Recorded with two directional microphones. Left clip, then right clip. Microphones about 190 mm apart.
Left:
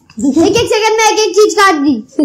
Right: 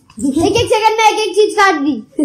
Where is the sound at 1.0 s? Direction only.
Centre (ahead or behind).